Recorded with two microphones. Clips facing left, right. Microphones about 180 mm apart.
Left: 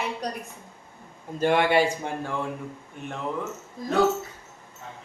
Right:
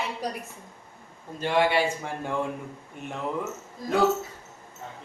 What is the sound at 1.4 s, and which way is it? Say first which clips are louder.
Speech: left 2 dB; 50° left (ahead or behind).